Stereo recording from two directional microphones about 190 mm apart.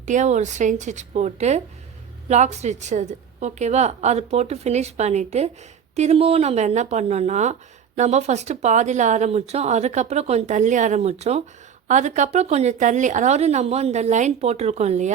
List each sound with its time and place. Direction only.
0.0 s speech: 40° right (ahead or behind)